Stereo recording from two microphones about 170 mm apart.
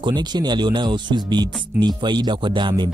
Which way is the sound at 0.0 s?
25° right (ahead or behind).